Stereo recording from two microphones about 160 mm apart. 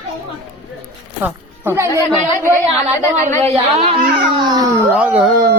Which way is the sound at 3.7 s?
40° right (ahead or behind).